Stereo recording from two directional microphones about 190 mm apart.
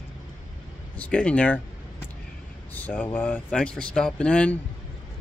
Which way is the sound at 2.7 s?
10° left (ahead or behind).